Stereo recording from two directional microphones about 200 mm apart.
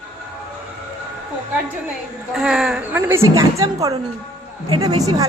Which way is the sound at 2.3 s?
Centre (ahead or behind).